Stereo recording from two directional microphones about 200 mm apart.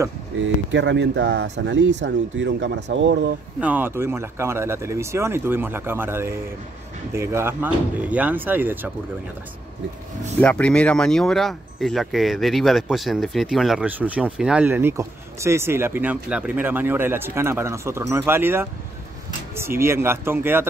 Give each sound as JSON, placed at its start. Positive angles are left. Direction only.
{"t": 0.7, "sound": "speech", "side_deg": -65}
{"t": 3.6, "sound": "speech", "side_deg": -10}
{"t": 10.4, "sound": "speech", "side_deg": 5}